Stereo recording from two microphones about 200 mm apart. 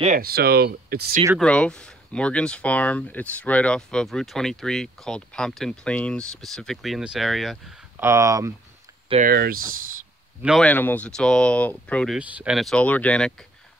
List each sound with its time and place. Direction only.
0.0 s speech: 45° right (ahead or behind)
1.4 s speech: 5° left (ahead or behind)
8.0 s speech: 15° right (ahead or behind)
9.2 s speech: 50° right (ahead or behind)
10.4 s speech: centre (ahead or behind)
12.2 s speech: 5° right (ahead or behind)